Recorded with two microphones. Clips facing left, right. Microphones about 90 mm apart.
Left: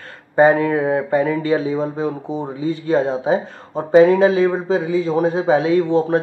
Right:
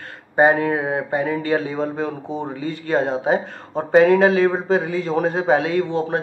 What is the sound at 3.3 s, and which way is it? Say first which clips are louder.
Speech: left 1 dB; 45° right (ahead or behind).